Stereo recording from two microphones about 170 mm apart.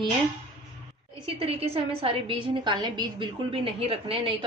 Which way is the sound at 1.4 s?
35° right (ahead or behind).